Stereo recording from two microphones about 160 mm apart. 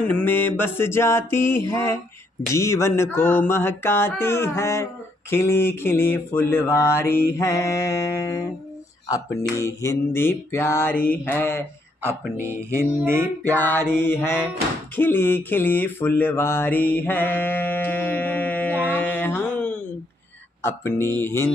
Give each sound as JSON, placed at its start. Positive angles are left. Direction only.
{"t": 0.0, "sound": "mantra", "side_deg": 10}
{"t": 11.1, "sound": "speech", "side_deg": 10}
{"t": 12.4, "sound": "music", "side_deg": -15}
{"t": 13.4, "sound": "mantra", "side_deg": 10}
{"t": 15.0, "sound": "a sound", "side_deg": 10}
{"t": 20.6, "sound": "mantra", "side_deg": 15}